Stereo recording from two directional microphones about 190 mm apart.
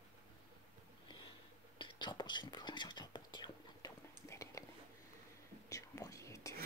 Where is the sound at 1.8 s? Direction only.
25° left (ahead or behind).